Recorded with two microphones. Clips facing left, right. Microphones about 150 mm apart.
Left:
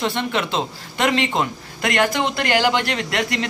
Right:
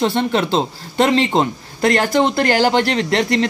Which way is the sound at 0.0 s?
35° right (ahead or behind).